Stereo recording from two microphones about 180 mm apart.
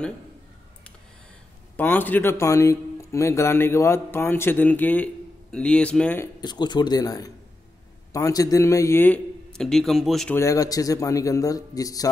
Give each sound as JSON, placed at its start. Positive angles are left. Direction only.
{"t": 1.8, "sound": "speech", "side_deg": 10}
{"t": 6.4, "sound": "speech", "side_deg": 25}
{"t": 10.3, "sound": "speech", "side_deg": 15}